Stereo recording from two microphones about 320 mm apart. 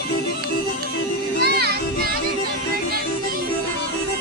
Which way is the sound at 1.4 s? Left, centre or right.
Right.